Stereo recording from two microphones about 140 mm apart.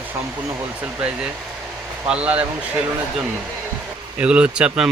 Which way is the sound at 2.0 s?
10° right (ahead or behind).